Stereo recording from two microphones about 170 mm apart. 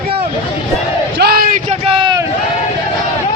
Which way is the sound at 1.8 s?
30° right (ahead or behind).